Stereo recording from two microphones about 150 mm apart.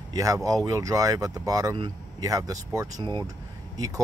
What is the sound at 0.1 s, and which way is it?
Speech, 20° right (ahead or behind).